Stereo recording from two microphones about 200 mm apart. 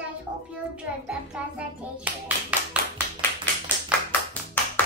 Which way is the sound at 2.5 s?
5° right (ahead or behind).